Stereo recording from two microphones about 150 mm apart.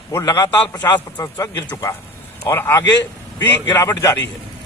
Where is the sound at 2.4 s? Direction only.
15° left (ahead or behind).